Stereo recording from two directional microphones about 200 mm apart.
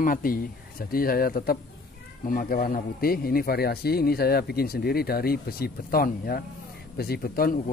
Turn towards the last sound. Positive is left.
turn(degrees=45)  # may be behind; listen again after turning